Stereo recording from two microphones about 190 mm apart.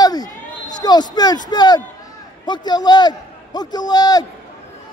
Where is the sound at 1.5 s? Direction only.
20° left (ahead or behind).